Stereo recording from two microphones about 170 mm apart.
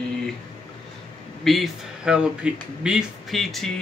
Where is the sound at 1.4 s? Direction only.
Centre (ahead or behind).